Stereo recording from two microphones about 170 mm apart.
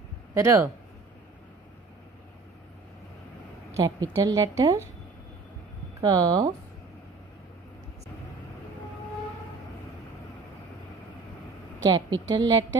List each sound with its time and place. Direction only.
0.3 s speech: 15° right (ahead or behind)
3.7 s a woman's voice: 20° right (ahead or behind)
5.9 s a woman's voice: 20° right (ahead or behind)
11.8 s a woman's voice: 25° right (ahead or behind)